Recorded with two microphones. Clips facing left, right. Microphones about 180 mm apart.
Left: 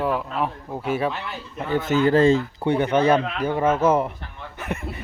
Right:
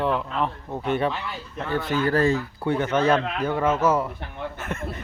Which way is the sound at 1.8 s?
20° left (ahead or behind).